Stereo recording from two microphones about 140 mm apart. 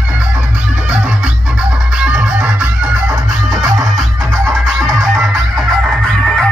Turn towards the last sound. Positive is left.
turn(degrees=-20)  # may be behind; listen again after turning